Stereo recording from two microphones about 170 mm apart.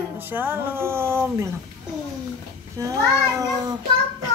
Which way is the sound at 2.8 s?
20° right (ahead or behind).